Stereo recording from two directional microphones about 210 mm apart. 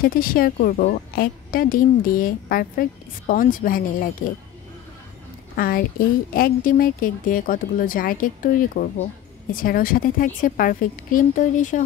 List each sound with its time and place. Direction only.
0.0 s a woman's voice: 45° left (ahead or behind)
5.6 s a woman's voice: 45° left (ahead or behind)